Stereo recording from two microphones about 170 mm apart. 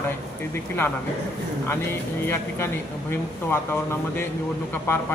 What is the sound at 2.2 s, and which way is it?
Speech, 15° left (ahead or behind).